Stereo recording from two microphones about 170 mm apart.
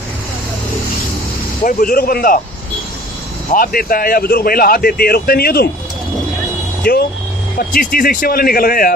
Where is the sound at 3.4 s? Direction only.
60° left (ahead or behind).